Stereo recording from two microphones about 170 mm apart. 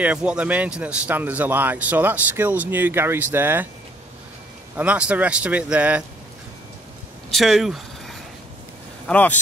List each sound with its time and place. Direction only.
0.0 s speech: 5° right (ahead or behind)
4.7 s speech: 5° right (ahead or behind)
7.2 s a sound: centre (ahead or behind)
9.0 s speech: 10° left (ahead or behind)